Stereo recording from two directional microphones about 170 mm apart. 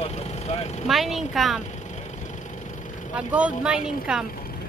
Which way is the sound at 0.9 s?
Centre (ahead or behind).